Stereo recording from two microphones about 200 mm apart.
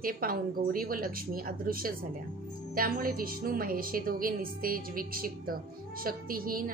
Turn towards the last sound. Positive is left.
turn(degrees=-45)  # may be behind; listen again after turning